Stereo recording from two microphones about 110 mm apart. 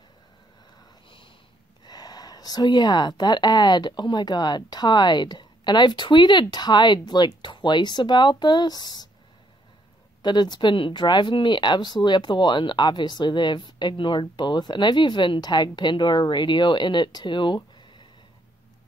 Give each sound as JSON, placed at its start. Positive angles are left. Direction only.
{"t": 1.9, "sound": "speech", "side_deg": 35}
{"t": 10.2, "sound": "speech", "side_deg": 40}